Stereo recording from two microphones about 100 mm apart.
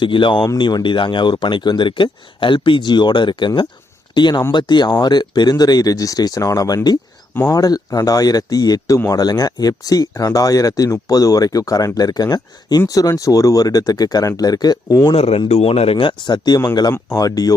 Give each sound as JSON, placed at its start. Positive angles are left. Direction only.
{"t": 0.0, "sound": "speech", "side_deg": 55}
{"t": 15.1, "sound": "speech", "side_deg": 90}